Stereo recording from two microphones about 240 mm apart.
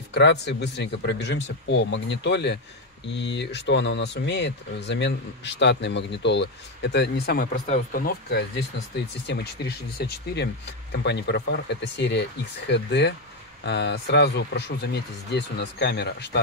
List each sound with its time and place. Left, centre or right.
0.1 s speech: left